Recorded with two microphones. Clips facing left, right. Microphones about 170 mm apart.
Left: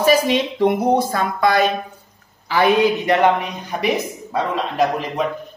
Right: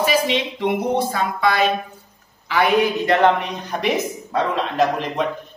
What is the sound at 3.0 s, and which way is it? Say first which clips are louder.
Speech: even; 15° left (ahead or behind).